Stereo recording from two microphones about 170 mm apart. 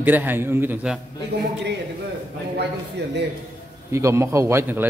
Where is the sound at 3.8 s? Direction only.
15° right (ahead or behind).